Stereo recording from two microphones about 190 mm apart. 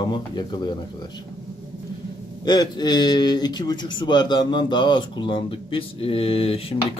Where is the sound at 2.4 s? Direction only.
20° left (ahead or behind).